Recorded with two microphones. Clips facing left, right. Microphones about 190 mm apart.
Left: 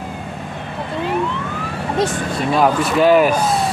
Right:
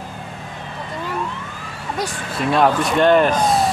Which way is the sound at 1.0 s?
65° left (ahead or behind).